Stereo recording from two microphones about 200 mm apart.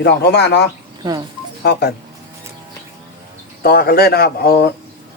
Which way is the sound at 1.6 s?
55° left (ahead or behind).